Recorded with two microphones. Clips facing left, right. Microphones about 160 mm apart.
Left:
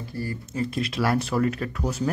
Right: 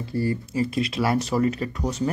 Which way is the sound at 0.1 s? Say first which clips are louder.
Right 7 dB; 25° right (ahead or behind).